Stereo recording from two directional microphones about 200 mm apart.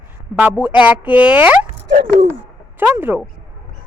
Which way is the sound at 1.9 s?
40° right (ahead or behind).